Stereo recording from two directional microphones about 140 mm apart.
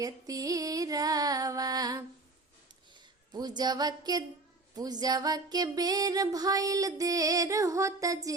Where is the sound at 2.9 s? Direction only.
35° right (ahead or behind).